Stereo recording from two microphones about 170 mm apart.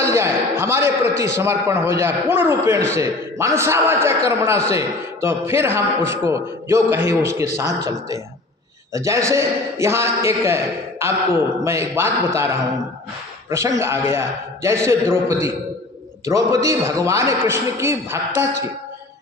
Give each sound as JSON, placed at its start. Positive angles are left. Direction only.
{"t": 0.0, "sound": "a sound", "side_deg": -15}
{"t": 0.6, "sound": "a man's voice", "side_deg": -15}
{"t": 8.9, "sound": "a man's voice", "side_deg": -15}